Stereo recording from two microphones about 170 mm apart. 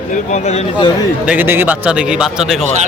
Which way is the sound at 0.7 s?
25° left (ahead or behind).